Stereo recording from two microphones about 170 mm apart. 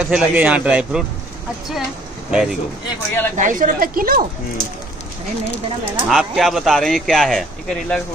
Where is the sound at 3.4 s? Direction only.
50° right (ahead or behind).